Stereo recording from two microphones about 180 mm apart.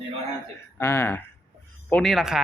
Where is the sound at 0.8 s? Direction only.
10° left (ahead or behind).